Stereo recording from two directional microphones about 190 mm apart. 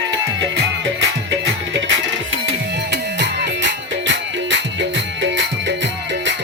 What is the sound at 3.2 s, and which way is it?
Music, 70° right (ahead or behind).